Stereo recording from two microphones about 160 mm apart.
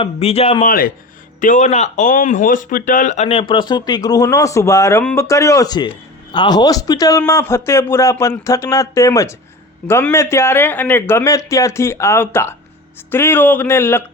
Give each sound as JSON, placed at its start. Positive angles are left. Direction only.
{"t": 0.0, "sound": "speech", "side_deg": 40}
{"t": 0.6, "sound": "speech", "side_deg": 65}
{"t": 1.4, "sound": "speech", "side_deg": 50}
{"t": 3.5, "sound": "speech", "side_deg": 25}